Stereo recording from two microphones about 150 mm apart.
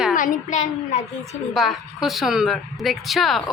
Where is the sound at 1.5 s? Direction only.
Centre (ahead or behind).